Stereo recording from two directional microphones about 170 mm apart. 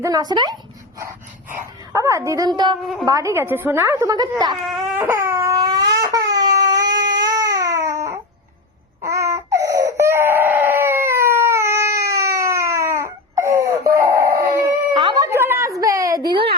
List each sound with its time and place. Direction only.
0.0 s speech: 20° right (ahead or behind)
0.9 s dog: 15° right (ahead or behind)
3.1 s a woman's voice: 20° right (ahead or behind)
4.6 s baby cry: centre (ahead or behind)
4.9 s crying: 15° right (ahead or behind)
9.0 s baby cry: 20° right (ahead or behind)
10.7 s a sound: 15° right (ahead or behind)
12.1 s crying: 20° right (ahead or behind)
13.9 s a sound: 20° right (ahead or behind)